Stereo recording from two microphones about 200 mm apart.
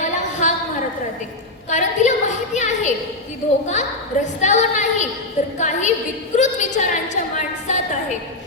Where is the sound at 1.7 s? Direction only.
35° left (ahead or behind).